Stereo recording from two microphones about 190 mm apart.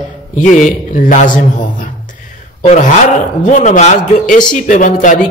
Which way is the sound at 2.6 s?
40° left (ahead or behind).